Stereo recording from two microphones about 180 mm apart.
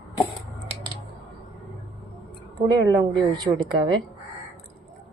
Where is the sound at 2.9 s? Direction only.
20° right (ahead or behind).